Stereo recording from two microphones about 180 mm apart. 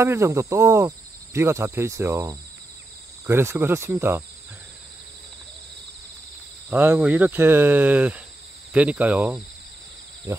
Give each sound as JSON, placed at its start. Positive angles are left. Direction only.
{"t": 0.0, "sound": "speech", "side_deg": -15}
{"t": 6.7, "sound": "speech", "side_deg": -10}
{"t": 10.3, "sound": "speech", "side_deg": -20}